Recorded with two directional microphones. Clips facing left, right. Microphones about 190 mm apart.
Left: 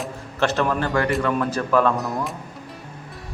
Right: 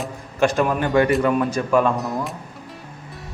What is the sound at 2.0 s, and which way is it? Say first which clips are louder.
Speech: right 1 dB; centre (ahead or behind).